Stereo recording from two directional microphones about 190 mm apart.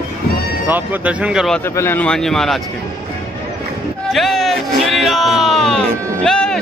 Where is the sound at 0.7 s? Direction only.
10° right (ahead or behind).